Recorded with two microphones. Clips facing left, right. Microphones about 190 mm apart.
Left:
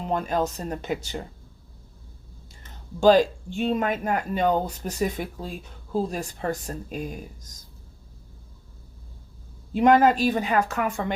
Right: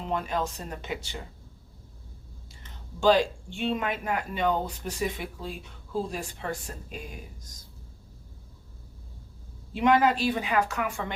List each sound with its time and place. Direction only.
0.1 s a woman's voice: 40° left (ahead or behind)
3.0 s speech: 40° left (ahead or behind)
9.7 s a woman's voice: 45° left (ahead or behind)